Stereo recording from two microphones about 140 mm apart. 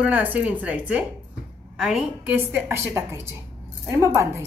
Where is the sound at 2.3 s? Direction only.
15° right (ahead or behind).